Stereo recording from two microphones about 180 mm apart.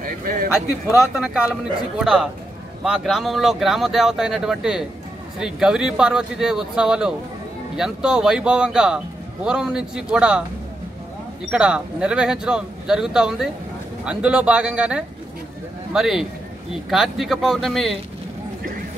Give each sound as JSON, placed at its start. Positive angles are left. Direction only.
{"t": 0.0, "sound": "a sound", "side_deg": -50}
{"t": 1.1, "sound": "speech", "side_deg": -5}
{"t": 11.5, "sound": "speech", "side_deg": -5}